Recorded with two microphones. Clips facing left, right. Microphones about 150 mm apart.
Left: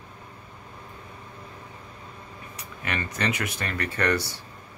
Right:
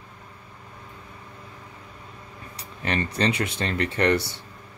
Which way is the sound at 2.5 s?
30° right (ahead or behind).